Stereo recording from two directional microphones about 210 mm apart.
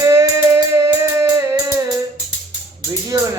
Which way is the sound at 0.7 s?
15° right (ahead or behind).